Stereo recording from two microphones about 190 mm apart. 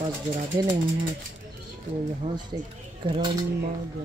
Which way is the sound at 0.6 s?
20° right (ahead or behind).